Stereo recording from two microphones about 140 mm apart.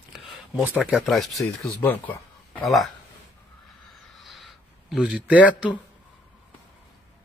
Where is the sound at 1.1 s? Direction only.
Centre (ahead or behind).